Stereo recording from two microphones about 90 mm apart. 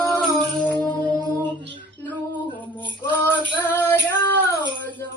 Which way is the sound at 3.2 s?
20° left (ahead or behind).